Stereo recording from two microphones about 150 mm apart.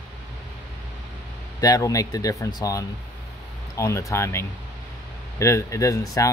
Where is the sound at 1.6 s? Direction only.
20° left (ahead or behind).